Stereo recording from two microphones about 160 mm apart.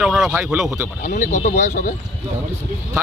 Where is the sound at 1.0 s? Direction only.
55° left (ahead or behind).